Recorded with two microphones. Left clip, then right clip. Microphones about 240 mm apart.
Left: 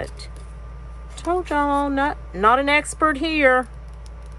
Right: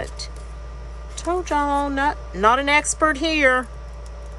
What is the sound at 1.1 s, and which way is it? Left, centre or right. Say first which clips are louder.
Speech: even; centre.